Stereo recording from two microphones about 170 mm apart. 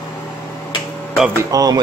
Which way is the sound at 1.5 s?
20° right (ahead or behind).